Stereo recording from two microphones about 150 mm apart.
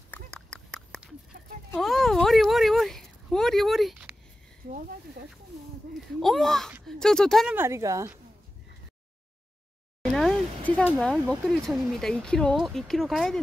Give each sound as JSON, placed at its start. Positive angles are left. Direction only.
{"t": 0.1, "sound": "a sound", "side_deg": 5}
{"t": 6.1, "sound": "speech", "side_deg": 0}
{"t": 7.5, "sound": "a woman's voice", "side_deg": -15}
{"t": 10.6, "sound": "speech", "side_deg": 10}